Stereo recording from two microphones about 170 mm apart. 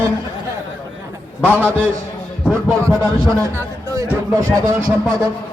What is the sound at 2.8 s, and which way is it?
A man's voice, 15° right (ahead or behind).